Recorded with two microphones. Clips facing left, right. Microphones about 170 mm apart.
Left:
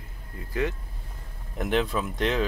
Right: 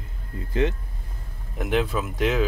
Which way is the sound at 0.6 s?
20° right (ahead or behind).